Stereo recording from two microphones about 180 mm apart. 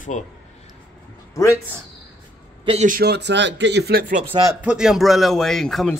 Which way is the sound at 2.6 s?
35° right (ahead or behind).